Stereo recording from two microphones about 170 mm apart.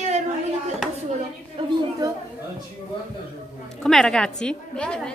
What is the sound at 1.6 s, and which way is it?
Speech, 30° right (ahead or behind).